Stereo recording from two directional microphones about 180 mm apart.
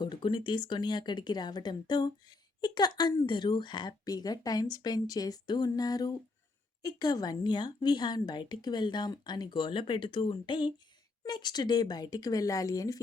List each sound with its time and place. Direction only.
0.0 s a woman's voice: 25° left (ahead or behind)